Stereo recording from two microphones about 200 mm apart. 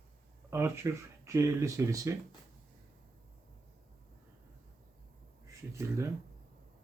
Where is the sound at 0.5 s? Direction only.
10° right (ahead or behind).